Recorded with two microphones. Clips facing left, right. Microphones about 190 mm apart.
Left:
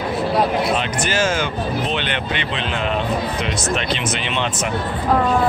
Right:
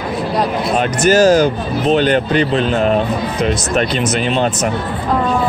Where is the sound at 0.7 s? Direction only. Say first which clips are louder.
Right 9 dB; 40° right (ahead or behind).